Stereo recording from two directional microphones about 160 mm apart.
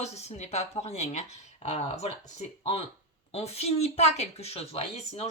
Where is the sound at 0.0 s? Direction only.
45° left (ahead or behind).